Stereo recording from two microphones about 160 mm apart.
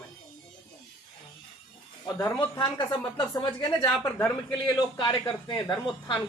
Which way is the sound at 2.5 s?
30° left (ahead or behind).